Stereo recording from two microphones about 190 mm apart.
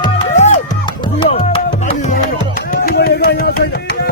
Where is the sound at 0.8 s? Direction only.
25° left (ahead or behind).